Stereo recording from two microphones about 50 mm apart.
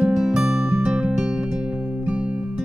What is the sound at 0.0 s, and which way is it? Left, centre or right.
Music, centre.